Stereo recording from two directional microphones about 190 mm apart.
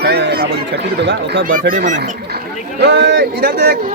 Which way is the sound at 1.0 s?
65° right (ahead or behind).